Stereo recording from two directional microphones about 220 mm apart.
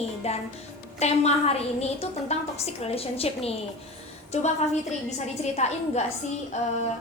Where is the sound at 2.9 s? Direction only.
25° left (ahead or behind).